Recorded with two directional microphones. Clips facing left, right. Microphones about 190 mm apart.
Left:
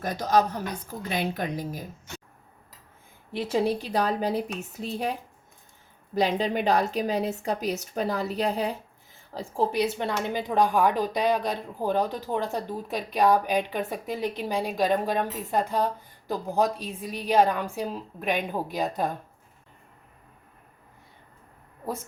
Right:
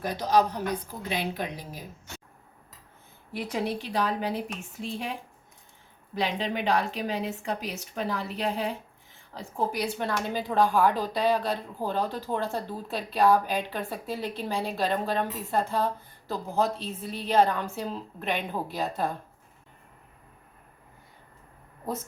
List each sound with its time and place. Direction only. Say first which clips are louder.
0.0 s speech: left 1 dB; 45° left (ahead or behind)
3.3 s a woman's voice: left 5 dB; 25° left (ahead or behind)
3.8 s a woman's voice: left 2 dB; 40° left (ahead or behind)
6.1 s a woman's voice: left 5 dB; 40° left (ahead or behind); by 19.1 s 15° left (ahead or behind)